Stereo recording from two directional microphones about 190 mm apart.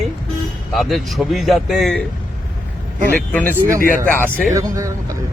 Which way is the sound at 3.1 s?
10° left (ahead or behind).